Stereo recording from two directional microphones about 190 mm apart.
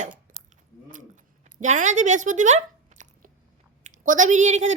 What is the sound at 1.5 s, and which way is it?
Speech, 40° right (ahead or behind).